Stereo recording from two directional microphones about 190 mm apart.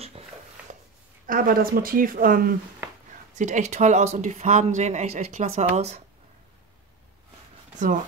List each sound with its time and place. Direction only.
1.2 s speech: 45° right (ahead or behind)
3.3 s speech: 40° right (ahead or behind)